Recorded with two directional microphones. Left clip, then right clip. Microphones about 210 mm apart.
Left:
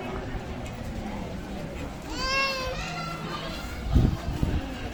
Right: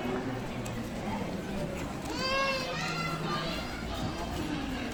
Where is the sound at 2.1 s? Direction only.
30° left (ahead or behind).